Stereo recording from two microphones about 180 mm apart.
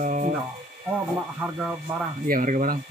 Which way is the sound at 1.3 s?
10° right (ahead or behind).